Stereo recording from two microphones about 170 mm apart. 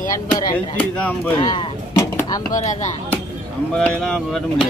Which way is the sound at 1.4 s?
25° left (ahead or behind).